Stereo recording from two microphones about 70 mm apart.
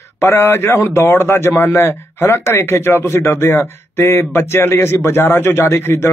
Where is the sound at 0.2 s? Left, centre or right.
Left.